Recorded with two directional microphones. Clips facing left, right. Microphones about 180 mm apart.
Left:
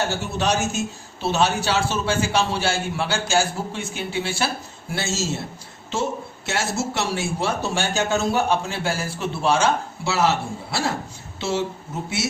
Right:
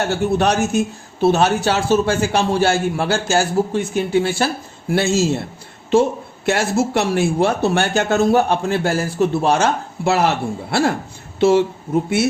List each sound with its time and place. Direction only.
0.1 s a man's voice: 60° right (ahead or behind)
4.9 s speech: 60° right (ahead or behind)